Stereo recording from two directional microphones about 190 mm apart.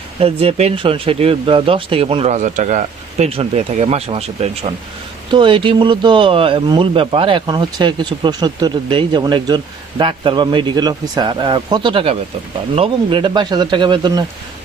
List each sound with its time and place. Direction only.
0.2 s speech: 30° right (ahead or behind)